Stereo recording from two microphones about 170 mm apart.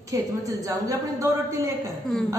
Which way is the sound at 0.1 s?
20° right (ahead or behind).